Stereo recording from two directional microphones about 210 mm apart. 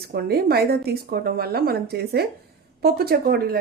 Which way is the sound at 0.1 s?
50° right (ahead or behind).